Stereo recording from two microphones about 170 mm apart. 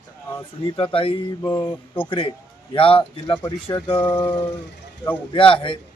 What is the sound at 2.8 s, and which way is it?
Speech, 35° left (ahead or behind).